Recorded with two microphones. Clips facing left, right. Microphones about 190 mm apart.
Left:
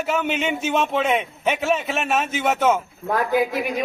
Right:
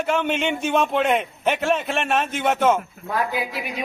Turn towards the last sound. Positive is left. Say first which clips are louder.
# left 5 dB
turn(degrees=50)  # may be behind; listen again after turning